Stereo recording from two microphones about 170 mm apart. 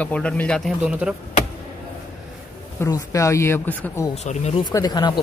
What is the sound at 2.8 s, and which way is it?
Speech, 20° left (ahead or behind).